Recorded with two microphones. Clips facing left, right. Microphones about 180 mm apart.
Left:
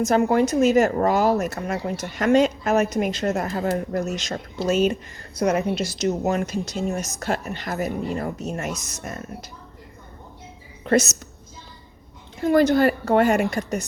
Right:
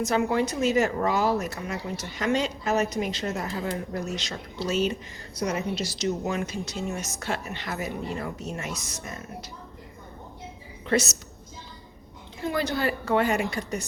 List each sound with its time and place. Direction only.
0.0 s speech: 45° left (ahead or behind)
10.8 s a woman's voice: 45° left (ahead or behind)
12.4 s speech: 50° left (ahead or behind)